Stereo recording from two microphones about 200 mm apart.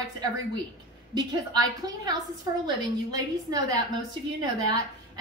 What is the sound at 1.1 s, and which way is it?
A woman's voice, 20° right (ahead or behind).